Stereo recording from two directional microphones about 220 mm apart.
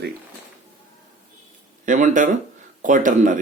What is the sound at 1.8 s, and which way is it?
Speech, 35° right (ahead or behind).